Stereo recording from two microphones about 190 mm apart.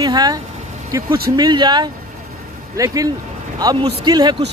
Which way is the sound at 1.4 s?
25° right (ahead or behind).